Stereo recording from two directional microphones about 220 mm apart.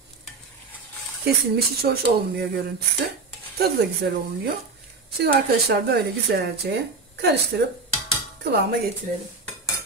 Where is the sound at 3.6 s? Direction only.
45° right (ahead or behind).